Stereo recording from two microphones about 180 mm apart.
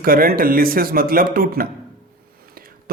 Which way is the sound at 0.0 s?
55° right (ahead or behind).